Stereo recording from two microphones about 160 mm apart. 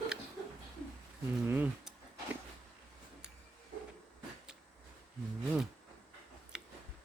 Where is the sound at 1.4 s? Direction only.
10° right (ahead or behind).